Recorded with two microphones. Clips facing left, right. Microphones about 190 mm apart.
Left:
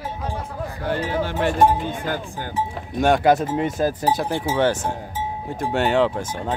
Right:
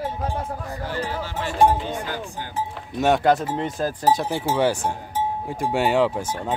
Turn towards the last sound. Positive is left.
turn(degrees=-5)  # may be behind; listen again after turning